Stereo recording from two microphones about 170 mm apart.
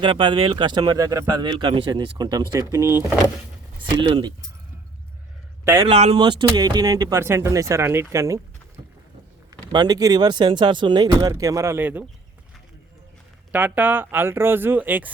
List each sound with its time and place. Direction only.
0.0 s speech: 30° right (ahead or behind)
3.8 s speech: 30° right (ahead or behind)
5.9 s speech: 35° right (ahead or behind); by 8.4 s 15° right (ahead or behind)
9.7 s speech: 25° right (ahead or behind)
13.5 s speech: 10° right (ahead or behind)